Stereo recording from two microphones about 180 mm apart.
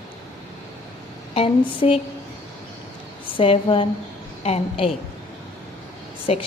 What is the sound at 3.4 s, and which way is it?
A woman's voice, 30° left (ahead or behind).